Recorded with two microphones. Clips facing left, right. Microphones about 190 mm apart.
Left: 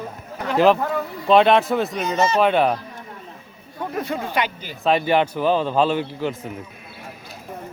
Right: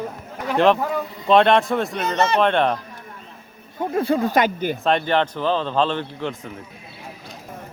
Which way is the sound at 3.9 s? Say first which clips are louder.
Right 6 dB; 30° right (ahead or behind).